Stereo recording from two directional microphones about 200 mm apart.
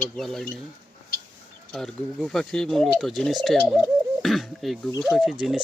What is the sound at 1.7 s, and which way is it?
Speech, centre (ahead or behind).